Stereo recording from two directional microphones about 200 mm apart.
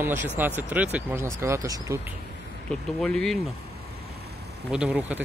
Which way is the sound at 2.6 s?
5° left (ahead or behind).